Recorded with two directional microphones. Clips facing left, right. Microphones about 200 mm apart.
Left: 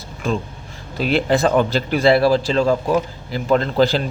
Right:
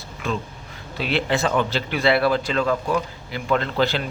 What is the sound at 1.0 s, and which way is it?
Speech, 40° left (ahead or behind).